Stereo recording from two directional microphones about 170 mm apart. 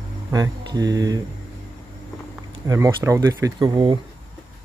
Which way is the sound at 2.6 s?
20° right (ahead or behind).